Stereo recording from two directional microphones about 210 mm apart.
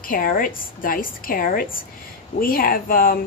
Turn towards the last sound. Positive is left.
turn(degrees=45)  # may be behind; listen again after turning